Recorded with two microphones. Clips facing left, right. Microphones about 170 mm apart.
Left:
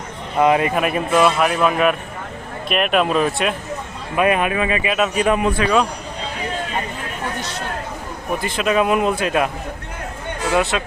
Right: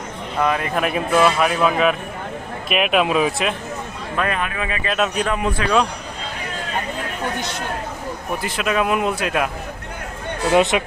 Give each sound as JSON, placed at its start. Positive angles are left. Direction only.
{"t": 0.3, "sound": "speech", "side_deg": 20}
{"t": 0.7, "sound": "a man's voice", "side_deg": 0}
{"t": 4.2, "sound": "speech", "side_deg": 15}
{"t": 4.9, "sound": "a man's voice", "side_deg": 0}
{"t": 5.6, "sound": "speech", "side_deg": 15}
{"t": 8.4, "sound": "a man's voice", "side_deg": -5}
{"t": 10.5, "sound": "speech", "side_deg": -20}